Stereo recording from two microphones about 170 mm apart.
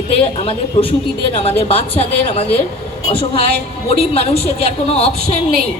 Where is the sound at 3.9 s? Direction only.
35° left (ahead or behind).